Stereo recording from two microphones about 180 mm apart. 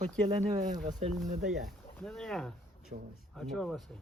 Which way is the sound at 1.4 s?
Centre (ahead or behind).